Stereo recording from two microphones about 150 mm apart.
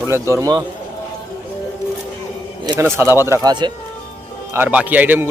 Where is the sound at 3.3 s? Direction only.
25° right (ahead or behind).